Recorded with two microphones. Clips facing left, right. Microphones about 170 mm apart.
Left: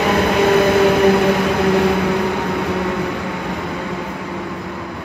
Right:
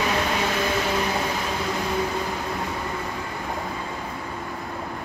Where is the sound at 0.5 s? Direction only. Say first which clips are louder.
Left 12 dB; 65° left (ahead or behind).